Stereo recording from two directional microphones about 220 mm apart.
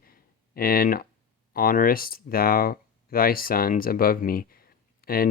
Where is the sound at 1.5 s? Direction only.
40° left (ahead or behind).